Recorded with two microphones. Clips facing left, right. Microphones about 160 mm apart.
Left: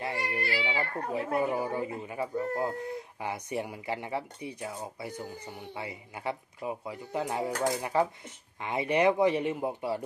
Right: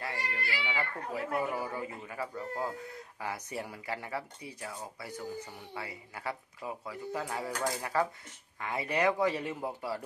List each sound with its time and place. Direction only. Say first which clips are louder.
0.4 s baby cry: left 3 dB; 35° left (ahead or behind)
1.1 s speech: left 4 dB; 25° left (ahead or behind)